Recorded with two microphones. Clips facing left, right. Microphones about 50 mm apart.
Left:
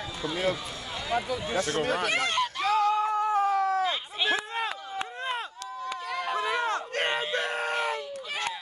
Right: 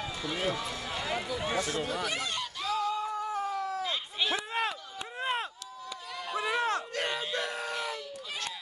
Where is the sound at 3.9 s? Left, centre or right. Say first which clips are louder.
Left 4 dB; left.